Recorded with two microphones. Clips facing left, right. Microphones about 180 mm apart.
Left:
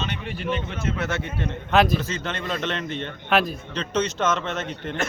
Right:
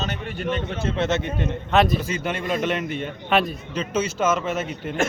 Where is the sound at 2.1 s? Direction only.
10° right (ahead or behind).